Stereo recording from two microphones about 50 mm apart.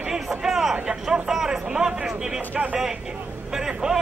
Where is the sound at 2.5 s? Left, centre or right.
Right.